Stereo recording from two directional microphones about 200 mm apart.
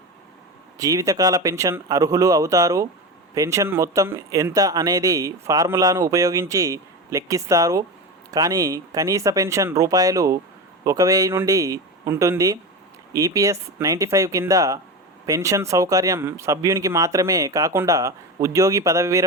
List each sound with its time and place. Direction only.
0.8 s speech: 15° right (ahead or behind)